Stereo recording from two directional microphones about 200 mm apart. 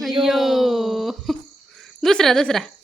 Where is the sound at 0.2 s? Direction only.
Centre (ahead or behind).